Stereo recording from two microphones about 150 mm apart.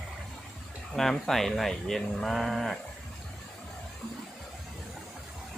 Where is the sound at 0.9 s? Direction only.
Centre (ahead or behind).